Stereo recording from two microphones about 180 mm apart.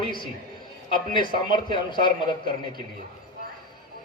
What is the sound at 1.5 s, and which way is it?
Speech, 25° left (ahead or behind).